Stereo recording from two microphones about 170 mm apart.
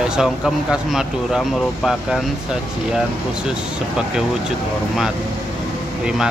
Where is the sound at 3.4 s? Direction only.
5° right (ahead or behind).